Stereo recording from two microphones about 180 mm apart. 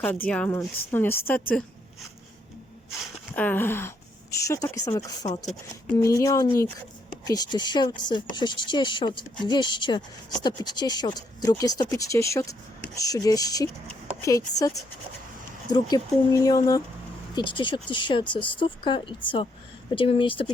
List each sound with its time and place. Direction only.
0.3 s speech: 5° left (ahead or behind)
3.3 s speech: 10° left (ahead or behind); by 20.5 s 30° left (ahead or behind)